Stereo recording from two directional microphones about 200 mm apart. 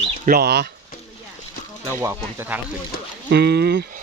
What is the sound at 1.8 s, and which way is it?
Speech, 15° right (ahead or behind).